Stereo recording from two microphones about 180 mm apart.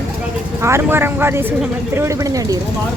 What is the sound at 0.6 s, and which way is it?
A man's voice, 15° right (ahead or behind).